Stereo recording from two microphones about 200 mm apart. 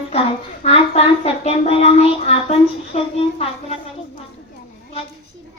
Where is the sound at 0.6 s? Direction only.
30° left (ahead or behind).